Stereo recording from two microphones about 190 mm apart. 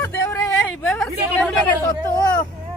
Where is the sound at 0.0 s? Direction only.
10° left (ahead or behind).